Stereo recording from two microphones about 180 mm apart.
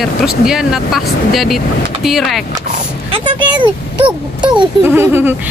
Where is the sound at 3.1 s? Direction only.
25° right (ahead or behind).